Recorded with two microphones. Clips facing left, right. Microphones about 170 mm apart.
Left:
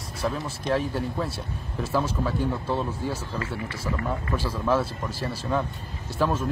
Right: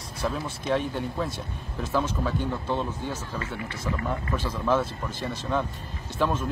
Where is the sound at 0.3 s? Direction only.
Centre (ahead or behind).